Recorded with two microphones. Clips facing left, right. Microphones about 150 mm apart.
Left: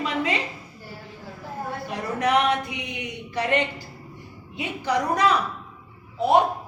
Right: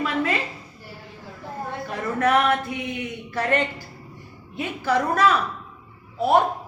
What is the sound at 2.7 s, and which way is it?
A woman's voice, 15° left (ahead or behind).